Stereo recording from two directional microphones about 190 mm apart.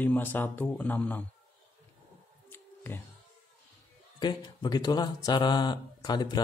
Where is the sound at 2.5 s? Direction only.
10° left (ahead or behind).